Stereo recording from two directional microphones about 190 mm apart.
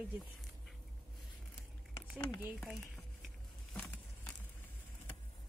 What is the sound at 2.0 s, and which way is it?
Speech, 10° left (ahead or behind).